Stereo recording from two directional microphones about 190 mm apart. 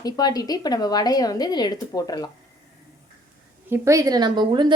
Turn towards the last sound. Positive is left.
turn(degrees=-25)  # may be behind; listen again after turning